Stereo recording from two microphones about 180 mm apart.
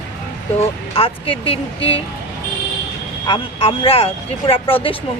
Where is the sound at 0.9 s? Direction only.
30° left (ahead or behind).